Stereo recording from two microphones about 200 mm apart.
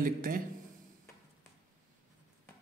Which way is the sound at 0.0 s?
45° right (ahead or behind).